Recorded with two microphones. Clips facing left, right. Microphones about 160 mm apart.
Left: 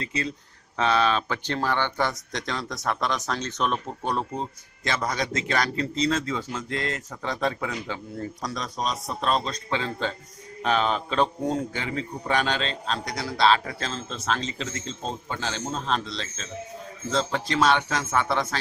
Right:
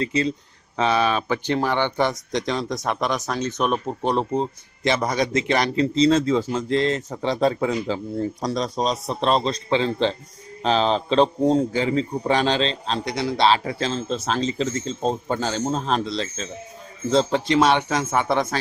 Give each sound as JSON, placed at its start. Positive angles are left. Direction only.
{"t": 0.0, "sound": "a man's voice", "side_deg": -25}
{"t": 0.8, "sound": "a man's voice", "side_deg": -15}
{"t": 17.5, "sound": "a man's voice", "side_deg": -25}